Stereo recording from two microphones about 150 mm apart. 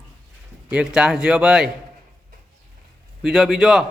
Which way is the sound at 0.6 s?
5° right (ahead or behind).